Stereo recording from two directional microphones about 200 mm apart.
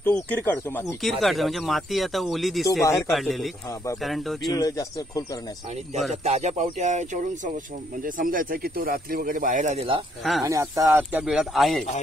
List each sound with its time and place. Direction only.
0.0 s speech: 10° left (ahead or behind)
1.2 s speech: centre (ahead or behind)
4.6 s speech: 15° left (ahead or behind)
6.2 s speech: 35° right (ahead or behind)
10.4 s speech: 15° right (ahead or behind)